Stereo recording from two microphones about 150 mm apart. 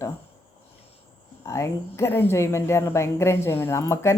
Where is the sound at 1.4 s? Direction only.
20° left (ahead or behind).